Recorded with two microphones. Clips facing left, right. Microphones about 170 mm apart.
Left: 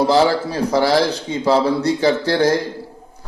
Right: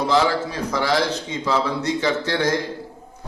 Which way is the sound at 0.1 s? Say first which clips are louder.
Left 4 dB; 35° left (ahead or behind).